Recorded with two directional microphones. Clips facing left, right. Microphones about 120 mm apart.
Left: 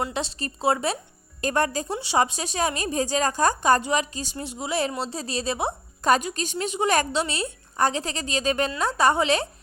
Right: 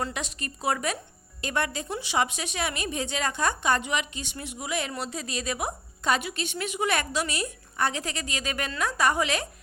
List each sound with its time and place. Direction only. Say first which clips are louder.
0.1 s a woman's voice: left 5 dB; 30° left (ahead or behind)
1.4 s a woman's voice: left 5 dB; 40° left (ahead or behind)